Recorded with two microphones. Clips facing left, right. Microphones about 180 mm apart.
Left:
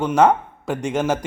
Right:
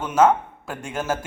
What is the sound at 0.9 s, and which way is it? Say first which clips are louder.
Speech: left 5 dB; 20° left (ahead or behind).